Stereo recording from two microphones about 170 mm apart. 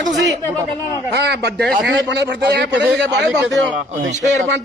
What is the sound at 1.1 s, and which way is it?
A man's voice, 80° right.